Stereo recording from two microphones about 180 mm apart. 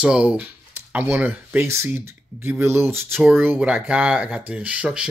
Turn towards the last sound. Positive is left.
turn(degrees=-5)  # may be behind; listen again after turning